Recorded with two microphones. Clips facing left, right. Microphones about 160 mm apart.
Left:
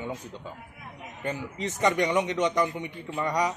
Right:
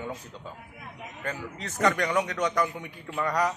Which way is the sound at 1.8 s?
15° left (ahead or behind).